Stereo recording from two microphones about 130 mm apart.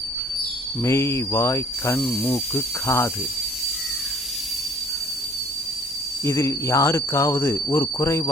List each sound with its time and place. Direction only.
0.8 s speech: 20° left (ahead or behind)
2.0 s speech: centre (ahead or behind)
2.2 s speech: 20° left (ahead or behind)
6.2 s speech: 20° left (ahead or behind)